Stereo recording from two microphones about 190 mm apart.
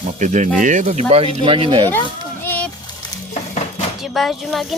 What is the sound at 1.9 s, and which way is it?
Children playing, 10° left (ahead or behind).